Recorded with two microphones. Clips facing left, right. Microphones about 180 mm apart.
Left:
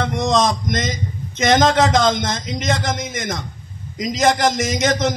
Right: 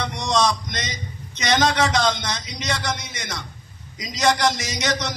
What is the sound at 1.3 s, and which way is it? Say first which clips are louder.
A man's voice: left 6 dB; 45° left (ahead or behind).